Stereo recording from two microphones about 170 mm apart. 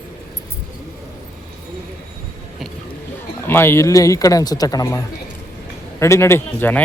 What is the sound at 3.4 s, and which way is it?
A man's voice, 15° left (ahead or behind).